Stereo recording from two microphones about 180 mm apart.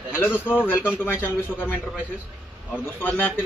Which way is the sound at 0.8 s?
10° left (ahead or behind).